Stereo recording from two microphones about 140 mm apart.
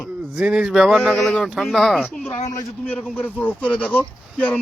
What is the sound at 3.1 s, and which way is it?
Speech, 10° left (ahead or behind).